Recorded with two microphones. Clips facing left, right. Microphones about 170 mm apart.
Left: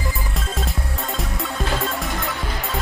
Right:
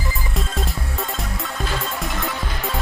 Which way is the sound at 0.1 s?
Centre (ahead or behind).